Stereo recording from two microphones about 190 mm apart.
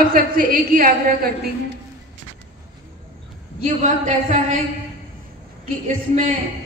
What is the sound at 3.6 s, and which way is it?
Speech, 40° right (ahead or behind).